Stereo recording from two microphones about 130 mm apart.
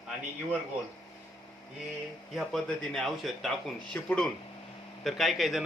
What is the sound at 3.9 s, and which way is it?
Speech, 15° left (ahead or behind).